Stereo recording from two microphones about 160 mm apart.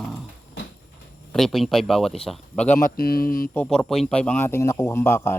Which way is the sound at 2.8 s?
70° left (ahead or behind).